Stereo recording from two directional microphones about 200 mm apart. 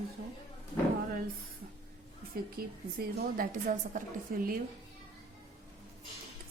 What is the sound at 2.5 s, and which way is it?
Speech, 45° right (ahead or behind).